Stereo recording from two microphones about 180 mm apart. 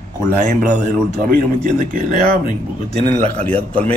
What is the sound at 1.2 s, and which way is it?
Speech, 50° right (ahead or behind).